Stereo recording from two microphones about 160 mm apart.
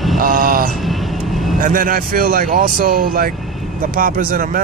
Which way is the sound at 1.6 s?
60° right (ahead or behind).